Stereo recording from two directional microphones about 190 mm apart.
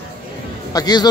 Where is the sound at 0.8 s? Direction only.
20° left (ahead or behind).